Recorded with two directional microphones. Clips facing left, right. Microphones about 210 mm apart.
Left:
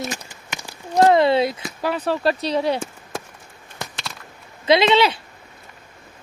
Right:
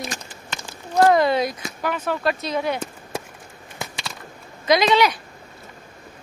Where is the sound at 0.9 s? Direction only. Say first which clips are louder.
Left 2 dB; 25° left (ahead or behind).